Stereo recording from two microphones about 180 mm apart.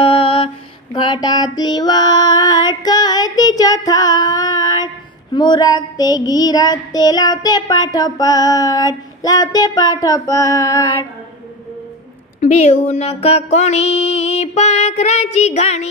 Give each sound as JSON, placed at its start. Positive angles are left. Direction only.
{"t": 0.0, "sound": "mantra", "side_deg": 30}
{"t": 0.9, "sound": "female singing", "side_deg": 25}
{"t": 12.4, "sound": "mantra", "side_deg": 40}